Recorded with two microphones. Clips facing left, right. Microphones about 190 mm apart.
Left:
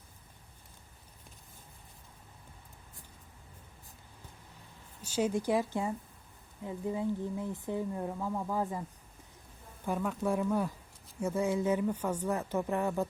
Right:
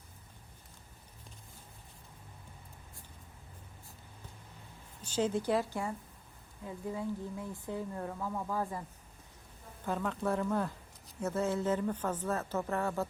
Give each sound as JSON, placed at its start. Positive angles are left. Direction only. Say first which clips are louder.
{"t": 5.0, "sound": "speech", "louder": "left 1 dB", "side_deg": 10}
{"t": 9.8, "sound": "speech", "louder": "left 2 dB", "side_deg": 10}